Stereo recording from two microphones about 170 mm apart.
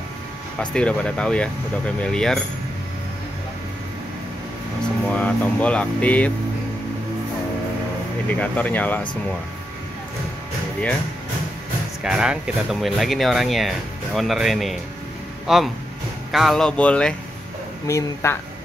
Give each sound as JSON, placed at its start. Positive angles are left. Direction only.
{"t": 0.6, "sound": "speech", "side_deg": 5}
{"t": 5.1, "sound": "speech", "side_deg": 10}
{"t": 8.4, "sound": "speech", "side_deg": 10}
{"t": 12.0, "sound": "speech", "side_deg": -5}